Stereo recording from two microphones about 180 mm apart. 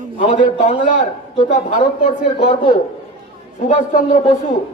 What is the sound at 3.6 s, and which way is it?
Speech, 45° left (ahead or behind).